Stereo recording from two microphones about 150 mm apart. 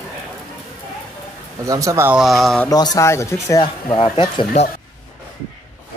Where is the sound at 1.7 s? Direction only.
20° right (ahead or behind).